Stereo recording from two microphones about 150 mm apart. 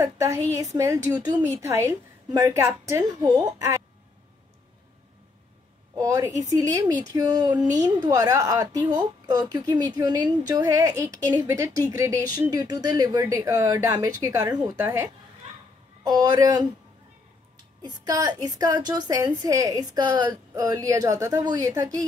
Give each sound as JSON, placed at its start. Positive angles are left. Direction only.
{"t": 0.0, "sound": "a woman's voice", "side_deg": -20}
{"t": 5.9, "sound": "a woman's voice", "side_deg": -20}
{"t": 17.8, "sound": "a woman's voice", "side_deg": -25}